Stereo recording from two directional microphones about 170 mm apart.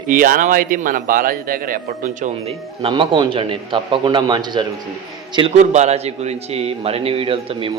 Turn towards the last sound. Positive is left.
turn(degrees=-35)  # may be behind; listen again after turning